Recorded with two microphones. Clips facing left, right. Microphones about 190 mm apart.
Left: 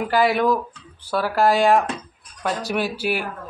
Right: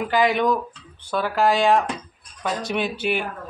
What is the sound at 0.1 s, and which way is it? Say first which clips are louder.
Speech: left 1 dB; 5° left (ahead or behind).